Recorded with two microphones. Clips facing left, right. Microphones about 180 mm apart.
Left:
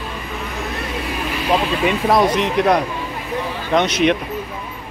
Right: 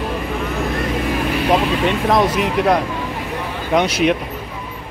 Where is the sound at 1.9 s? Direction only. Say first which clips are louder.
Left 1 dB; 5° left (ahead or behind).